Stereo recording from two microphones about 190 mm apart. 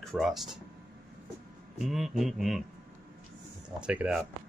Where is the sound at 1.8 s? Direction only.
Centre (ahead or behind).